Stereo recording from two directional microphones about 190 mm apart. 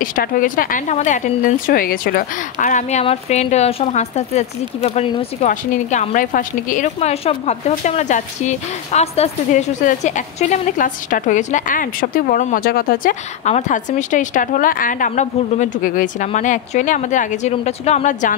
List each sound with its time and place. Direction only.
0.0 s a woman's voice: 45° left (ahead or behind); by 5.5 s 30° left (ahead or behind)
5.5 s a woman's voice: 40° left (ahead or behind)